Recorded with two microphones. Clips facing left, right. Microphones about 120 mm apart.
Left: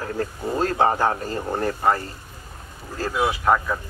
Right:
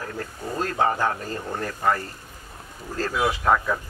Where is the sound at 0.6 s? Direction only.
35° left (ahead or behind).